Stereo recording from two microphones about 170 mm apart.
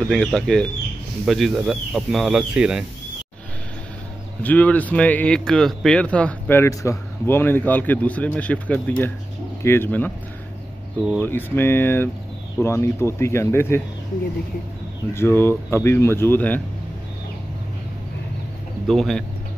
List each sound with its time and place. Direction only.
0.1 s speech: 5° left (ahead or behind)
4.4 s a man's voice: 10° left (ahead or behind)
11.0 s speech: centre (ahead or behind)
11.2 s a man's voice: 10° left (ahead or behind)
15.1 s a man's voice: 15° left (ahead or behind)
18.9 s speech: centre (ahead or behind)